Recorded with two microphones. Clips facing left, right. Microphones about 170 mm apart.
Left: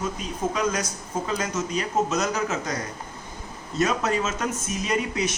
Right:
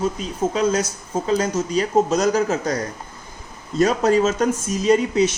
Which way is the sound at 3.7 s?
35° right (ahead or behind).